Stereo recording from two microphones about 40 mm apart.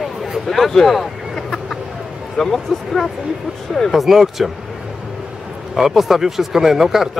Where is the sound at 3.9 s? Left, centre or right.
Centre.